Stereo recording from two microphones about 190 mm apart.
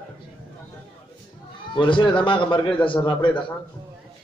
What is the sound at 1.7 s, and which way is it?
A man's voice, 25° left (ahead or behind).